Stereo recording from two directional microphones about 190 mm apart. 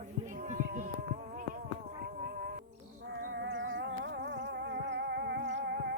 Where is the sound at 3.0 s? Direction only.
65° right (ahead or behind).